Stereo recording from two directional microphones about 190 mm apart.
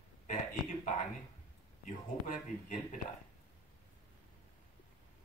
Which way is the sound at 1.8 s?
45° left (ahead or behind).